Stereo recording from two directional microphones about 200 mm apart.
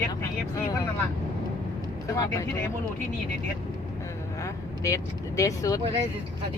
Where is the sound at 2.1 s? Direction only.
15° left (ahead or behind).